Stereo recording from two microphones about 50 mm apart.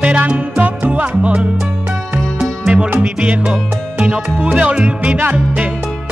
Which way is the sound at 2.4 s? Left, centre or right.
Centre.